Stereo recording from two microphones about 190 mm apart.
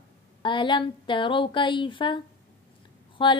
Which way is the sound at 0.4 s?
25° left (ahead or behind).